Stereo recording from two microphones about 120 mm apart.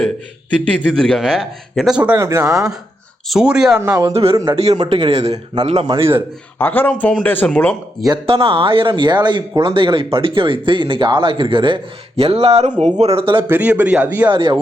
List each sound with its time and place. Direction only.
0.5 s speech: 10° left (ahead or behind)
2.1 s speech: 25° right (ahead or behind)
3.2 s speech: 5° right (ahead or behind)
4.1 s speech: 55° right (ahead or behind)
6.0 s speech: 20° right (ahead or behind)
6.6 s speech: 15° left (ahead or behind)
8.3 s speech: 50° right (ahead or behind)
13.5 s speech: 15° right (ahead or behind)
14.3 s speech: 45° right (ahead or behind)